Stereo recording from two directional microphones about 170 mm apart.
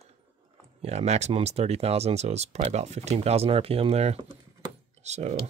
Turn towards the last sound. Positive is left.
turn(degrees=-40)  # may be behind; listen again after turning